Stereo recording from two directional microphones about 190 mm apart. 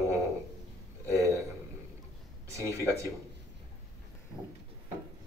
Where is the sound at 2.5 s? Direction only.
15° right (ahead or behind).